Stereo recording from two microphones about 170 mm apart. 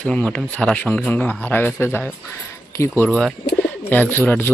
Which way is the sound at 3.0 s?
Centre (ahead or behind).